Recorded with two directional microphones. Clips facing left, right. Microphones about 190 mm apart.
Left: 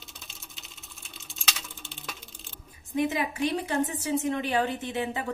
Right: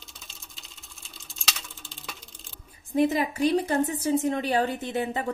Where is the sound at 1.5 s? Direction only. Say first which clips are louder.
Even; centre (ahead or behind).